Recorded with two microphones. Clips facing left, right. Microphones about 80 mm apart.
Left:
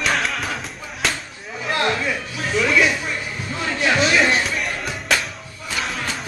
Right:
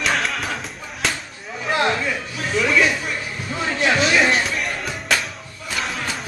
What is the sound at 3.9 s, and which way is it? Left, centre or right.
Music, centre.